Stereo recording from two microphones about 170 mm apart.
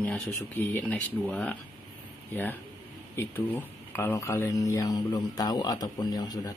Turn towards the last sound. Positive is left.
turn(degrees=25)  # may be behind; listen again after turning